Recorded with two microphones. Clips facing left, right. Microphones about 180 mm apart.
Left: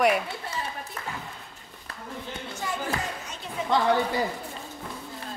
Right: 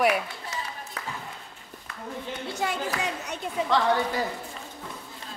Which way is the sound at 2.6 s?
70° right (ahead or behind).